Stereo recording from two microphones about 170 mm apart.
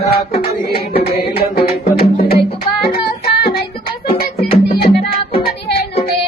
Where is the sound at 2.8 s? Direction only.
65° left (ahead or behind).